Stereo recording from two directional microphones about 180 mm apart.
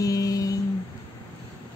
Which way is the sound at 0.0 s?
20° left (ahead or behind).